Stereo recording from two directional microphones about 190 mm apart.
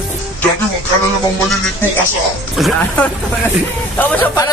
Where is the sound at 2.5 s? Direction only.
Centre (ahead or behind).